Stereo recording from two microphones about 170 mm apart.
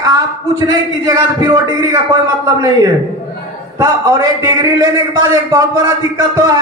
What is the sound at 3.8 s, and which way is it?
A man's voice, 20° right (ahead or behind).